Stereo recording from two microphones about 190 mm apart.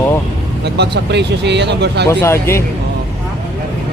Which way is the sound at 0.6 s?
60° right (ahead or behind).